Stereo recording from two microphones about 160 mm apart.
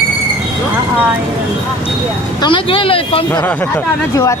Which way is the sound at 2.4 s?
30° left (ahead or behind).